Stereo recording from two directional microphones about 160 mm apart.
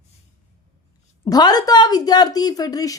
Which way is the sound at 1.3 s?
25° left (ahead or behind).